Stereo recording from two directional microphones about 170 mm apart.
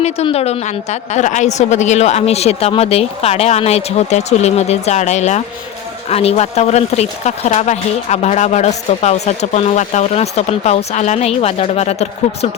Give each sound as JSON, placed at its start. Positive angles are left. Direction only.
{"t": 0.0, "sound": "speech", "side_deg": 35}